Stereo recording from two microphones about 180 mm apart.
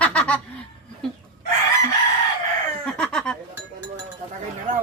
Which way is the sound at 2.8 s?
5° left (ahead or behind).